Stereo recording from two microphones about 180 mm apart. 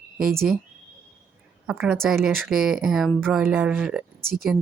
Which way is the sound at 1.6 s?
Centre (ahead or behind).